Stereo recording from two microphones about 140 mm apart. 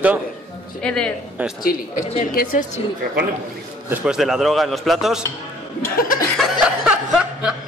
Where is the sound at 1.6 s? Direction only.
90° left.